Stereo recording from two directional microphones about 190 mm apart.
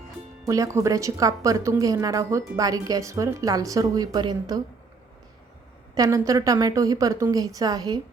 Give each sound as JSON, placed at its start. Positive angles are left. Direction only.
{"t": 0.4, "sound": "a woman's voice", "side_deg": -15}
{"t": 5.9, "sound": "a woman's voice", "side_deg": -15}